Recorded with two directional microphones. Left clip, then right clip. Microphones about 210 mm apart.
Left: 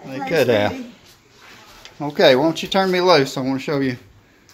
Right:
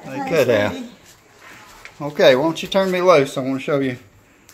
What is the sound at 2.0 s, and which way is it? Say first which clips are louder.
Speech: even; 30° left (ahead or behind).